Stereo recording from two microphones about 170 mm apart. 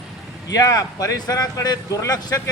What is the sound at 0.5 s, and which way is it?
Speech, 20° left (ahead or behind).